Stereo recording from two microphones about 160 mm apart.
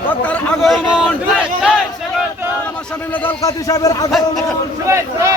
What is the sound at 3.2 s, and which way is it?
Speech, 20° left (ahead or behind).